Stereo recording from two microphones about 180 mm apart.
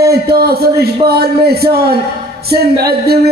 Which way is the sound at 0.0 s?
60° right (ahead or behind).